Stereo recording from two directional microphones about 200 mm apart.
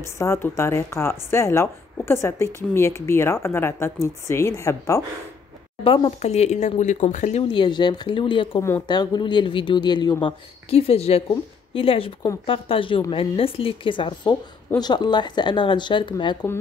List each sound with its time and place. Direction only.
0.2 s a woman's voice: 15° left (ahead or behind)
5.9 s speech: 25° left (ahead or behind)